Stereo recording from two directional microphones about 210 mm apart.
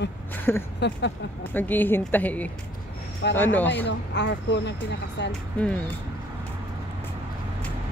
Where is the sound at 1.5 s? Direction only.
10° left (ahead or behind).